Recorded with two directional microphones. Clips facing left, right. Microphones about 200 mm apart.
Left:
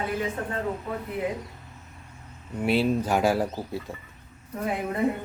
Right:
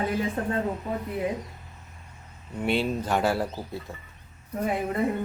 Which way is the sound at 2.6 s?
5° left (ahead or behind).